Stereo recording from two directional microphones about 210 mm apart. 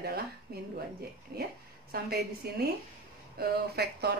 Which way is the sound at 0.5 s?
50° right (ahead or behind).